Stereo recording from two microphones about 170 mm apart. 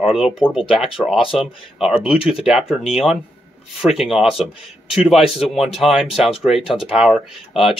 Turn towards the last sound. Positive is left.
turn(degrees=-5)  # may be behind; listen again after turning